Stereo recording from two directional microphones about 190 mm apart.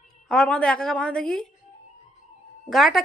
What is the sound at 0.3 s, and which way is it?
A woman's voice, 5° left (ahead or behind).